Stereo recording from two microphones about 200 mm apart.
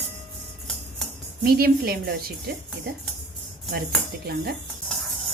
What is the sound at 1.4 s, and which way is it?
Speech, 50° right (ahead or behind).